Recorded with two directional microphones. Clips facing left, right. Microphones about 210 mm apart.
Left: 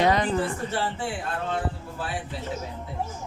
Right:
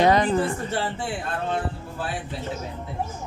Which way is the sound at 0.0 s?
35° right (ahead or behind).